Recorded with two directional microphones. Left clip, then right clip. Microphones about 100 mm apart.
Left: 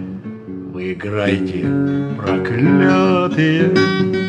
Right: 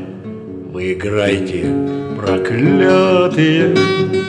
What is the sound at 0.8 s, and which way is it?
Mantra, 30° right (ahead or behind).